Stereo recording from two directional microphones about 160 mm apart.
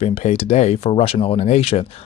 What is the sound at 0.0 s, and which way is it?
Speech, 45° left (ahead or behind).